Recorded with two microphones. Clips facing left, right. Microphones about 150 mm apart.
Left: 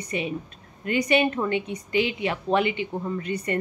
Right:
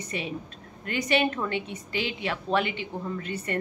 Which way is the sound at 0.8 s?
10° left (ahead or behind).